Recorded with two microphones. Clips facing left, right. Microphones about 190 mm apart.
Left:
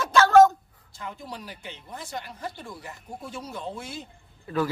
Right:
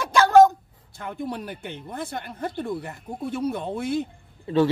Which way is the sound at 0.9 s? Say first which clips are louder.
Right 7 dB; 55° right (ahead or behind).